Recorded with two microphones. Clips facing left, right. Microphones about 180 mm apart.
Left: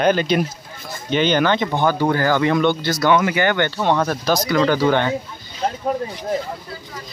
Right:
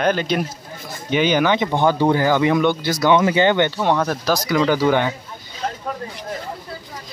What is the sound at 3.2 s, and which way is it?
Speech, 25° right (ahead or behind).